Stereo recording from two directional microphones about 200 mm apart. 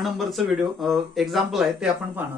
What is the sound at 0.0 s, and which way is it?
A man's voice, centre (ahead or behind).